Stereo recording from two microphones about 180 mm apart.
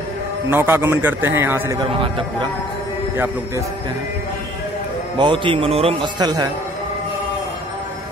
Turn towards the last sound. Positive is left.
turn(degrees=-20)  # may be behind; listen again after turning